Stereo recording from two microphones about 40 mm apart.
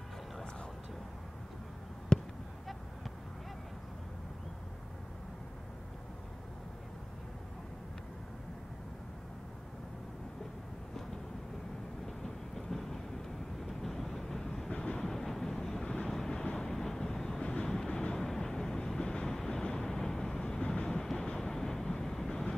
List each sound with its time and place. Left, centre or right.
2.1 s a sound: centre
12.1 s train: centre
13.7 s vehicle: centre
14.8 s train: left
15.0 s vehicle: centre
15.8 s vehicle: left
16.1 s wind noise: centre
16.5 s vehicle: centre